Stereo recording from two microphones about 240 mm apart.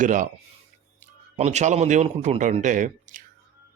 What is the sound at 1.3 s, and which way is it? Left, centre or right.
A man's voice, right.